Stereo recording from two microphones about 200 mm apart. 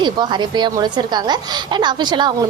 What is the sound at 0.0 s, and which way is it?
A woman's voice, 20° right (ahead or behind).